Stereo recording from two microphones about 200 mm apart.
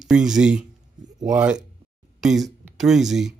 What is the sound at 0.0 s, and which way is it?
Speech, 5° right (ahead or behind).